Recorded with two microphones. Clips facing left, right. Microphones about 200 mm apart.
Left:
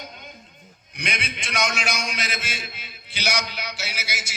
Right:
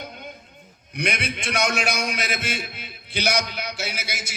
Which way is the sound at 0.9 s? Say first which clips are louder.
Right 5 dB; 55° right (ahead or behind).